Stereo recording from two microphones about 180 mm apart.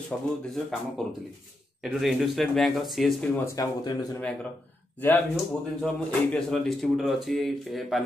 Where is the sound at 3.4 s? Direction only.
20° left (ahead or behind).